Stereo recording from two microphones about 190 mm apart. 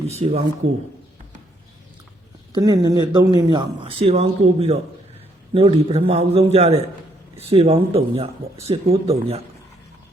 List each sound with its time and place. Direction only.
0.1 s speech: 35° right (ahead or behind)
2.5 s speech: 20° right (ahead or behind)